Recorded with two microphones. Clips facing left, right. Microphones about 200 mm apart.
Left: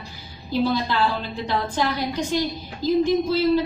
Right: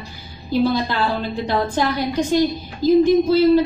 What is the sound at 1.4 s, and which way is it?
A woman's voice, 50° right (ahead or behind).